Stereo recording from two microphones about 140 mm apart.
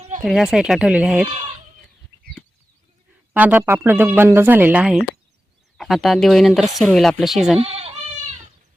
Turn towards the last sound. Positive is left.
turn(degrees=-45)  # may be behind; listen again after turning